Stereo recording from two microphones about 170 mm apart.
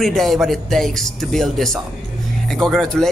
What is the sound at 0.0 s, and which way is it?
A woman's voice, centre (ahead or behind).